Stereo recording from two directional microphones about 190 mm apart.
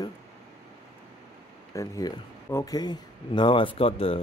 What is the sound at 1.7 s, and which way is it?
Speech, 15° left (ahead or behind).